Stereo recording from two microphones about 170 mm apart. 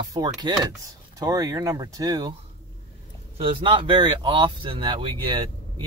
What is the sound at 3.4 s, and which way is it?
Speech, 30° right (ahead or behind).